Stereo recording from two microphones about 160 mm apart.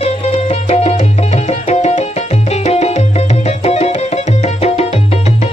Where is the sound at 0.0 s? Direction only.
40° left (ahead or behind).